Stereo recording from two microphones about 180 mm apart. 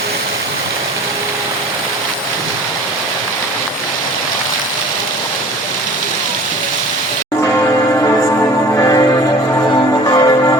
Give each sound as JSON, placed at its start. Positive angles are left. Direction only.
{"t": 8.7, "sound": "music", "side_deg": 20}
{"t": 10.1, "sound": "church bell", "side_deg": 20}